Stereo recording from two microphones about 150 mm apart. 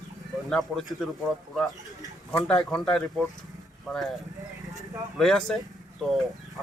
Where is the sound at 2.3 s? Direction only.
5° left (ahead or behind).